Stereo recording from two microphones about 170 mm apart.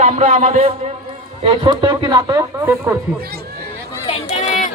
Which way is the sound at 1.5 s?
25° right (ahead or behind).